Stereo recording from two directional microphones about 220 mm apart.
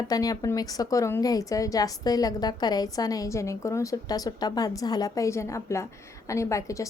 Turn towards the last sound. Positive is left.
turn(degrees=15)  # may be behind; listen again after turning